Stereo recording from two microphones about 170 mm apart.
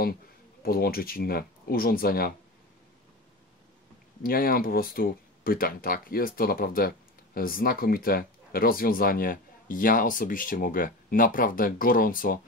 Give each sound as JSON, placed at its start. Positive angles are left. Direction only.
{"t": 0.6, "sound": "speech", "side_deg": 60}
{"t": 4.2, "sound": "speech", "side_deg": 60}